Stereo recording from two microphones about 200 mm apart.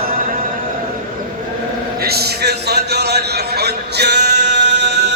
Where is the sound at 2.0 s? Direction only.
50° right (ahead or behind).